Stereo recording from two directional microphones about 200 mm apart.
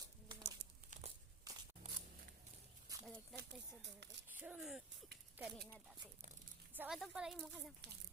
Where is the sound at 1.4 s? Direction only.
20° right (ahead or behind).